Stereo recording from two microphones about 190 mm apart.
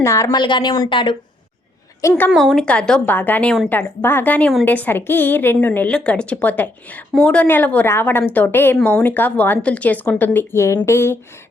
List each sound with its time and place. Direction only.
0.0 s speech: 15° left (ahead or behind)
2.0 s a woman's voice: 15° left (ahead or behind)
2.3 s a woman's voice: centre (ahead or behind)